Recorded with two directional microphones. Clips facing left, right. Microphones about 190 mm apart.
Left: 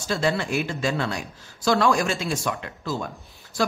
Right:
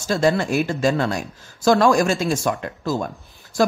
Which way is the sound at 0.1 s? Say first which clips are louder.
Right 5 dB; 45° right (ahead or behind).